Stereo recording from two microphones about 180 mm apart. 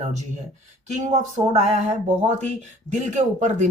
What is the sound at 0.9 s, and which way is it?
A woman's voice, 40° right (ahead or behind).